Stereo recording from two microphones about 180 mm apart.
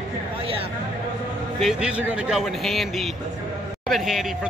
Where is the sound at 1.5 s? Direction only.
5° right (ahead or behind).